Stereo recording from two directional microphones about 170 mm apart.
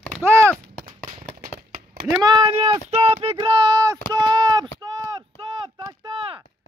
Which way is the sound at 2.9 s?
35° right (ahead or behind).